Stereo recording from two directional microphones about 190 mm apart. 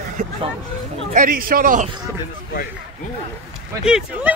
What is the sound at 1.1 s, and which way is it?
Speech, 50° right (ahead or behind).